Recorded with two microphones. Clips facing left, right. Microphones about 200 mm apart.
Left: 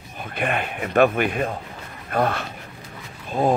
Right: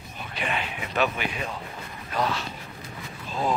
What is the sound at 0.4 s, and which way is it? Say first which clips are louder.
Speech: left 6 dB; 55° left (ahead or behind).